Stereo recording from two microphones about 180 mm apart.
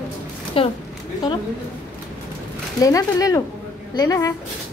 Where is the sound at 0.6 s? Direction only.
30° left (ahead or behind).